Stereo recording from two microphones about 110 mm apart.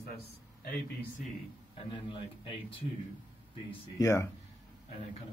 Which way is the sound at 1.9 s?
45° left (ahead or behind).